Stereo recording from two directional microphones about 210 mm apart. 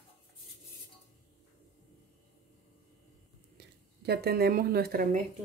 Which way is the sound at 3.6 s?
50° right (ahead or behind).